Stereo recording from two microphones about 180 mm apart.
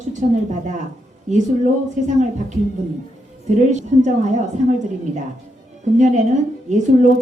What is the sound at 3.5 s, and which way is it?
Speech, 40° right (ahead or behind).